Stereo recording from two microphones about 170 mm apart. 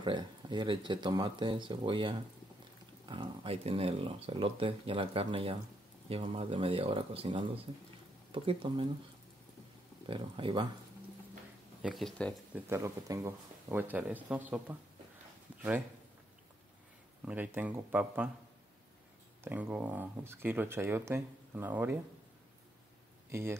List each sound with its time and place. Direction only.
0.0 s speech: 30° right (ahead or behind)
10.0 s speech: 30° right (ahead or behind)
11.8 s speech: centre (ahead or behind)
12.5 s speech: 15° right (ahead or behind)
17.2 s speech: 10° right (ahead or behind)
19.4 s speech: 10° right (ahead or behind)
23.3 s speech: 15° right (ahead or behind)